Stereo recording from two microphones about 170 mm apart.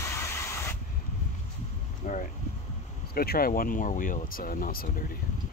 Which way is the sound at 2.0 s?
50° left (ahead or behind).